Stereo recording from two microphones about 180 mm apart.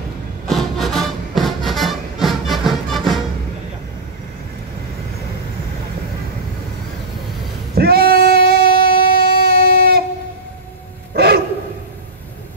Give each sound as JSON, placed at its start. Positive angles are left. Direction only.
{"t": 0.5, "sound": "music", "side_deg": 0}
{"t": 7.7, "sound": "female singing", "side_deg": -60}
{"t": 11.1, "sound": "a sound", "side_deg": -60}